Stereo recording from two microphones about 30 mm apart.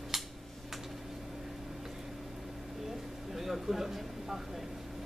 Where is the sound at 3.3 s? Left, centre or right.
Centre.